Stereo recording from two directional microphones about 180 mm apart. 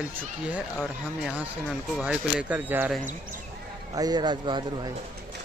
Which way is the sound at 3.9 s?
20° right (ahead or behind).